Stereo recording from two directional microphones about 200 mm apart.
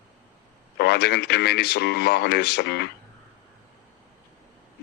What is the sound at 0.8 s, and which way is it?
Speech, 55° left (ahead or behind).